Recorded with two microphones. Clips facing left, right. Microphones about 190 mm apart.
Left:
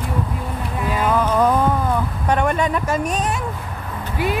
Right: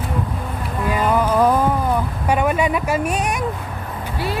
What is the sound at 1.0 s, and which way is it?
Speech, 10° right (ahead or behind).